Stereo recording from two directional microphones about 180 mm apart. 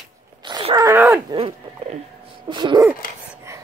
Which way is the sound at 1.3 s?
30° right (ahead or behind).